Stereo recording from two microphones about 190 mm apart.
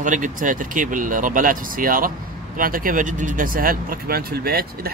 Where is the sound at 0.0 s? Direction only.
40° right (ahead or behind).